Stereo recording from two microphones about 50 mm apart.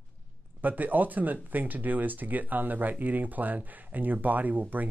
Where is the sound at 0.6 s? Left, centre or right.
Right.